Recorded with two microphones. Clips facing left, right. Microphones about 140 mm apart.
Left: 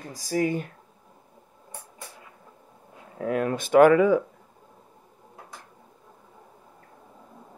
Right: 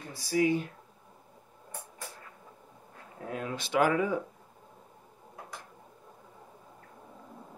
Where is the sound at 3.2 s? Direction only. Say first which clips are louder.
Left 10 dB; 70° left (ahead or behind).